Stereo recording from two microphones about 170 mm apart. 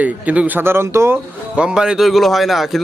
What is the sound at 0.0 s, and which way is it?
Speech, 10° right (ahead or behind).